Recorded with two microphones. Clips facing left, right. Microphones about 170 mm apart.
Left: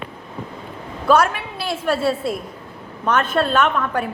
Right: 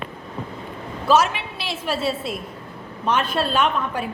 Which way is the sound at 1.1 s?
25° right (ahead or behind).